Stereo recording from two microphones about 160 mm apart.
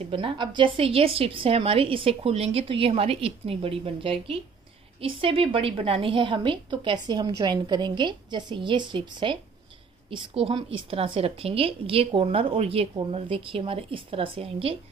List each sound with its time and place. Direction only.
0.1 s a woman's voice: 30° right (ahead or behind)